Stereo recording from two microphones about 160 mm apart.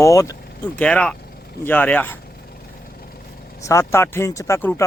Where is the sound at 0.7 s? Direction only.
10° left (ahead or behind).